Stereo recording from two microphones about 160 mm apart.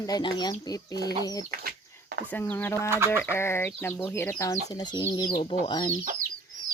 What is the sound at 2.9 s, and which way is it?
Bird, 15° right (ahead or behind).